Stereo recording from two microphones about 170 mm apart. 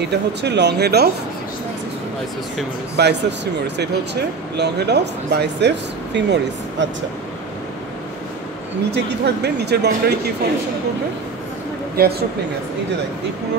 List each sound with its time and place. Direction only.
0.1 s speech: 85° right
3.0 s speech: 85° right
8.9 s speech: 80° right
12.0 s speech: 70° right (ahead or behind)